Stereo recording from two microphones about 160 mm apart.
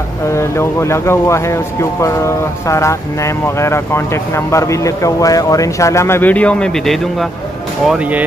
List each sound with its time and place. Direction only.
0.3 s speech: 15° left (ahead or behind); by 8.2 s 5° right (ahead or behind)